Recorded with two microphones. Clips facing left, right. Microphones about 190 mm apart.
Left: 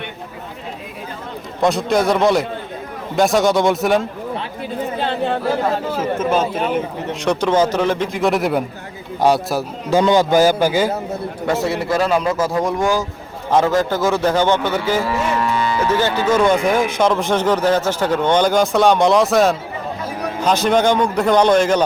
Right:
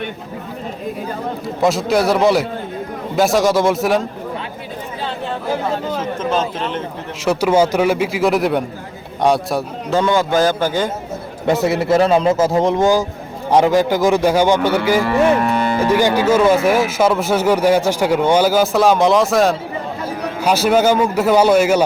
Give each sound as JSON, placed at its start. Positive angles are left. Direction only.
{"t": 1.6, "sound": "a man's voice", "side_deg": 0}
{"t": 5.9, "sound": "speech", "side_deg": 10}
{"t": 7.3, "sound": "a man's voice", "side_deg": -10}
{"t": 9.9, "sound": "speech", "side_deg": 15}
{"t": 11.4, "sound": "a man's voice", "side_deg": -20}
{"t": 15.0, "sound": "a sound", "side_deg": -60}
{"t": 15.9, "sound": "a man's voice", "side_deg": -15}